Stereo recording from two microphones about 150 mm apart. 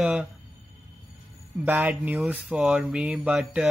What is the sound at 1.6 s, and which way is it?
Speech, 10° right (ahead or behind).